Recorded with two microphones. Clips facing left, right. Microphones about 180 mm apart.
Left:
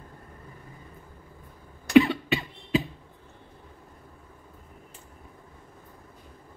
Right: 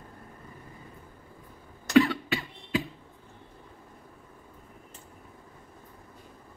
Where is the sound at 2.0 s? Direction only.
20° left (ahead or behind).